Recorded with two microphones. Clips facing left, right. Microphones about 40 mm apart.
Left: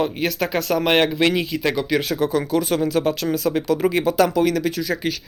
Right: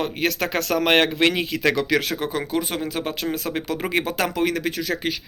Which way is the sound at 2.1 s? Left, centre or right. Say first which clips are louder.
Left 5 dB; right.